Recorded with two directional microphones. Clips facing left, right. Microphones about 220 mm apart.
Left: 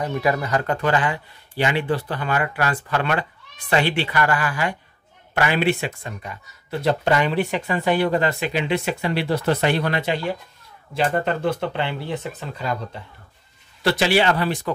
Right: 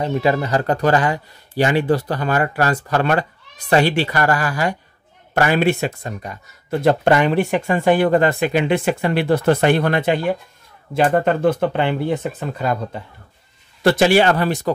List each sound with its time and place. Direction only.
0.0 s speech: 25° right (ahead or behind); by 12.7 s 50° right (ahead or behind)
13.8 s speech: 50° right (ahead or behind)